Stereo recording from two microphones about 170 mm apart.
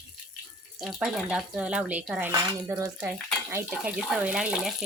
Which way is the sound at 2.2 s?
15° right (ahead or behind).